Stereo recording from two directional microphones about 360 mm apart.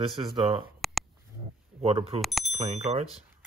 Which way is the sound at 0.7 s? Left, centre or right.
Centre.